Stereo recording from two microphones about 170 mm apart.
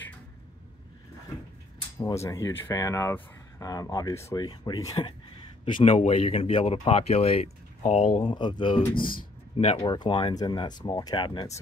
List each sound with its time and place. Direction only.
2.0 s speech: 20° left (ahead or behind); by 8.2 s 45° left (ahead or behind)
8.2 s speech: 30° left (ahead or behind)